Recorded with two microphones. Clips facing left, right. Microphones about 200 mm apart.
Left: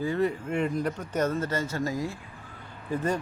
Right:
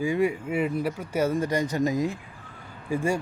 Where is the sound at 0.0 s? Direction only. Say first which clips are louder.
Right 2 dB; 10° right (ahead or behind).